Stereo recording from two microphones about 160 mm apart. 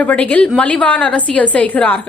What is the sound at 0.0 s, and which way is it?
Speech, 10° left (ahead or behind).